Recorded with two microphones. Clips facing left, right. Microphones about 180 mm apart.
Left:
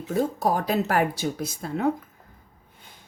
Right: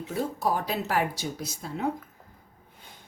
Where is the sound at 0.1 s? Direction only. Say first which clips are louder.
Left 5 dB; 45° left (ahead or behind).